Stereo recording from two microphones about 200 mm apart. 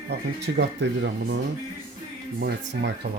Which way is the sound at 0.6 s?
55° right (ahead or behind).